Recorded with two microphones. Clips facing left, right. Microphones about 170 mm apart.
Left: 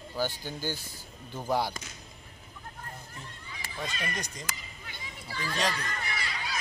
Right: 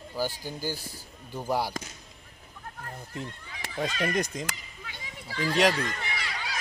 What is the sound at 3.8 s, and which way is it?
Speech, 50° right (ahead or behind).